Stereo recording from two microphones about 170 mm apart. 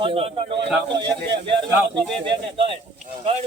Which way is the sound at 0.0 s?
30° right (ahead or behind).